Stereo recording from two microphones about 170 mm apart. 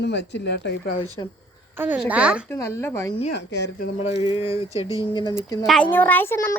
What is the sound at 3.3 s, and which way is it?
Speech, 90° left.